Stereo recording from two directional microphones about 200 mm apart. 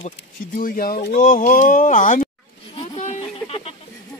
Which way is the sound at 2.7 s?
30° left (ahead or behind).